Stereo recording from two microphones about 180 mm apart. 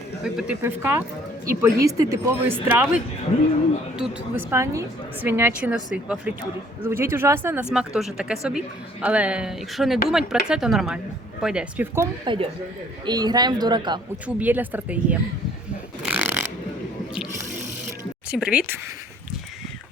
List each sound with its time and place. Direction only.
0.3 s a woman's voice: 10° right (ahead or behind)
3.9 s a woman's voice: 5° right (ahead or behind)
4.5 s a woman's voice: 15° right (ahead or behind)
12.2 s speech: 30° right (ahead or behind)
14.3 s a woman's voice: 10° right (ahead or behind)
16.0 s a sound: 10° right (ahead or behind)
18.3 s a woman's voice: 5° right (ahead or behind)